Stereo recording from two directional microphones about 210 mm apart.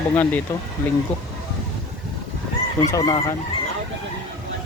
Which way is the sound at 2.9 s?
15° left (ahead or behind).